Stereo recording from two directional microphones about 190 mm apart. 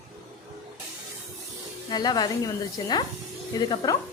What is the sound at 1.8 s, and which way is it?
Speech, 20° left (ahead or behind).